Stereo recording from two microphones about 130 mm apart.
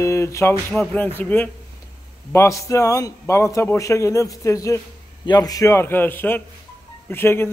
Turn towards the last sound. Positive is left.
turn(degrees=20)  # may be behind; listen again after turning